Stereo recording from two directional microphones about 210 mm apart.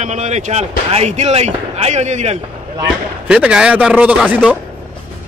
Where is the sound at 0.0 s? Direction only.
35° right (ahead or behind).